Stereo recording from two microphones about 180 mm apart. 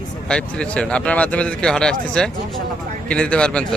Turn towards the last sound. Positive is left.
turn(degrees=5)  # may be behind; listen again after turning